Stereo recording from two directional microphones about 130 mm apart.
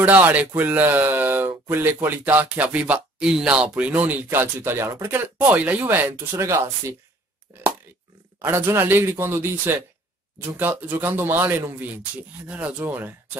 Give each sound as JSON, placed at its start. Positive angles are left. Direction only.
{"t": 0.0, "sound": "speech", "side_deg": -15}
{"t": 7.5, "sound": "a sound", "side_deg": -20}
{"t": 8.4, "sound": "speech", "side_deg": -15}